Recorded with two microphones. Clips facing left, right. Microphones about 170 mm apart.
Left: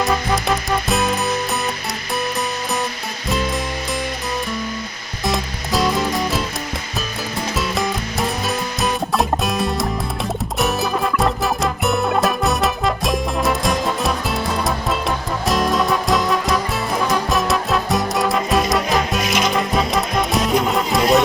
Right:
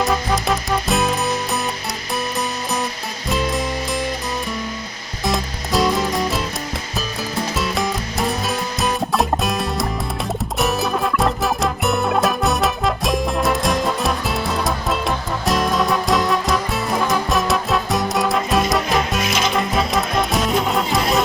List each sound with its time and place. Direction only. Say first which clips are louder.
0.0 s music: even; centre (ahead or behind)
3.2 s music: even; centre (ahead or behind)
5.2 s music: even; centre (ahead or behind)
7.5 s music: left 2 dB; centre (ahead or behind)